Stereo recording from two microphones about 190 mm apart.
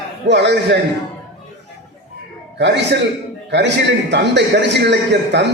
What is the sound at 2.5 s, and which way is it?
A man's voice, 65° right (ahead or behind).